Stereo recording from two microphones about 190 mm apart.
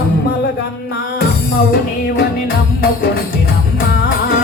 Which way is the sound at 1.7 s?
55° left (ahead or behind).